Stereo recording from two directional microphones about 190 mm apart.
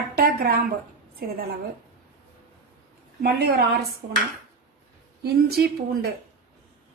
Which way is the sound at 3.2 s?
55° right (ahead or behind).